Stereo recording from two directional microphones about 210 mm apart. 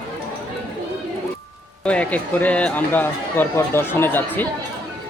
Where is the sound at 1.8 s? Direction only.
5° left (ahead or behind).